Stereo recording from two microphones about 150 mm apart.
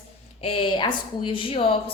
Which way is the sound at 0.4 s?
35° left (ahead or behind).